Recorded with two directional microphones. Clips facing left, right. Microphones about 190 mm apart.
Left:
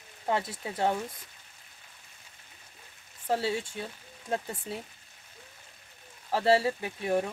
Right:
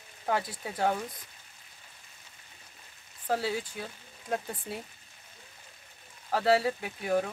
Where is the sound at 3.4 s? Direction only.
25° left (ahead or behind).